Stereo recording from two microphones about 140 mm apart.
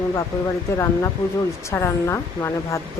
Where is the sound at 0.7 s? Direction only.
20° left (ahead or behind).